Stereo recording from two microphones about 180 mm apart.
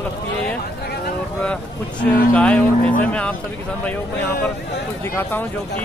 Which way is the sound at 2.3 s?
5° left (ahead or behind).